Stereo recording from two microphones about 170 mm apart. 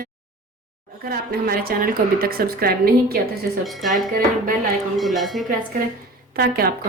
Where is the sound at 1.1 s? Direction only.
60° right (ahead or behind).